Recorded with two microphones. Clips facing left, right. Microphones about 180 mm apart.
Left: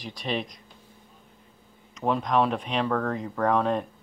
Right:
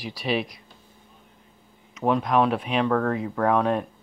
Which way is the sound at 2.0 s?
5° right (ahead or behind).